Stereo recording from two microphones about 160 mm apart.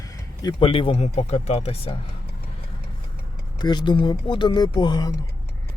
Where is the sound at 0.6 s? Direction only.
35° left (ahead or behind).